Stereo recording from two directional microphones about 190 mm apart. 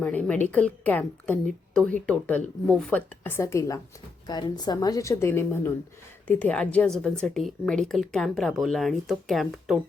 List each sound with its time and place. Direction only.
0.0 s a woman's voice: 5° left (ahead or behind)